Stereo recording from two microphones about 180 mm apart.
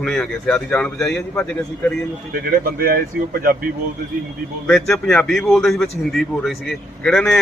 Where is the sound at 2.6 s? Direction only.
55° right (ahead or behind).